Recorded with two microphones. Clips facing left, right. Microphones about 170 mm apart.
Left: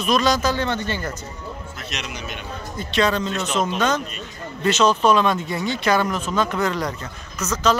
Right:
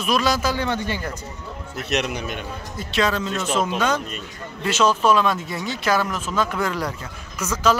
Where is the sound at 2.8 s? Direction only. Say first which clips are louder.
Left 2 dB; 5° right (ahead or behind).